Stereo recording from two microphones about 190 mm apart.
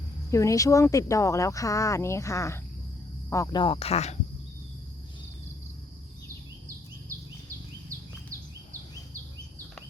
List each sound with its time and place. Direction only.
0.3 s speech: 15° left (ahead or behind); by 4.2 s 35° left (ahead or behind)
8.3 s bird vocalization: 15° right (ahead or behind)